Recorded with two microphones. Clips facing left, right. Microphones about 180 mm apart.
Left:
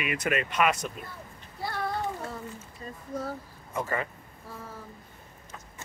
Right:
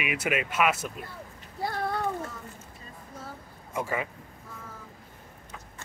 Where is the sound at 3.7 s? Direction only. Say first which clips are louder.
Even; 10° right (ahead or behind).